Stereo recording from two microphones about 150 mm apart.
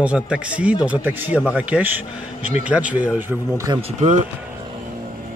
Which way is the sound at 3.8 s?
45° right (ahead or behind).